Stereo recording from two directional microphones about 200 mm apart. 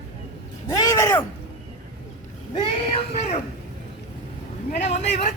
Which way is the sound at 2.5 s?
25° left (ahead or behind).